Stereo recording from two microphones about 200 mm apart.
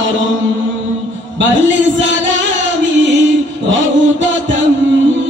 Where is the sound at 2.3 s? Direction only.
70° right (ahead or behind).